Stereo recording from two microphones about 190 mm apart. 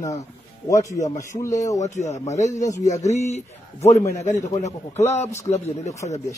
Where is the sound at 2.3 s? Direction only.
40° left (ahead or behind).